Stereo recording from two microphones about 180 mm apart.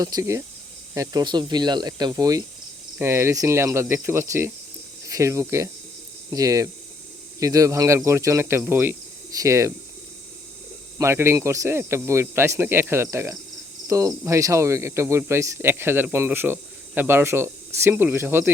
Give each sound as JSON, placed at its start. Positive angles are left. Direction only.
{"t": 0.0, "sound": "speech", "side_deg": -20}
{"t": 10.9, "sound": "speech", "side_deg": -15}
{"t": 13.8, "sound": "cricket", "side_deg": -15}
{"t": 14.3, "sound": "speech", "side_deg": -15}